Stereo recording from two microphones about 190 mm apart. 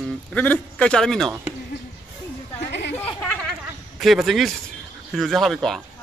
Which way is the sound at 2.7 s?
65° left (ahead or behind).